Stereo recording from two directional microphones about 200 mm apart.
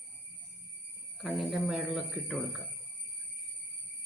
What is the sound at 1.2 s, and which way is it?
Speech, centre (ahead or behind).